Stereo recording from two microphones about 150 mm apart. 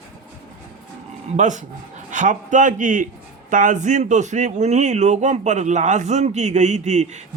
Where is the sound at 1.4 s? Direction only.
55° right (ahead or behind).